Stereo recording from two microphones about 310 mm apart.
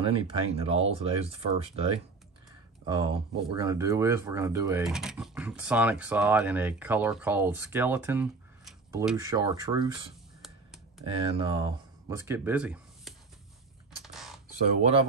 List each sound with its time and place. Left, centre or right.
0.0 s speech: centre
10.4 s a sound: centre
11.3 s speech: centre
14.0 s mechanisms: centre
14.8 s speech: centre